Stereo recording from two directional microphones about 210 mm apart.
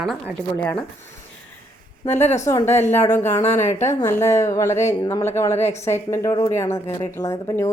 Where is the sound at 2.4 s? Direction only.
10° left (ahead or behind).